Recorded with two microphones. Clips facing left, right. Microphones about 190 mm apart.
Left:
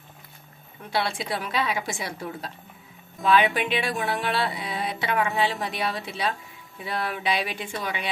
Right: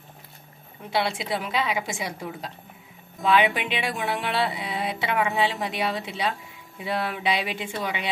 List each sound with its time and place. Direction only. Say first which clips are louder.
0.8 s speech: right 1 dB; 20° right (ahead or behind)